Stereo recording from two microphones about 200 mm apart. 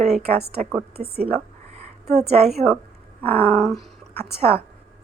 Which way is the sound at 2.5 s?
Centre (ahead or behind).